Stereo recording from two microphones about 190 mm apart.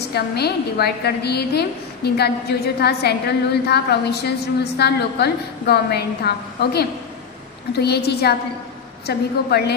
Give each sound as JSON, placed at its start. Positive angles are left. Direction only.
{"t": 0.1, "sound": "a woman's voice", "side_deg": 55}